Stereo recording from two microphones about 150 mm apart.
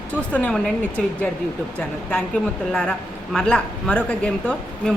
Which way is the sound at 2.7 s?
5° left (ahead or behind).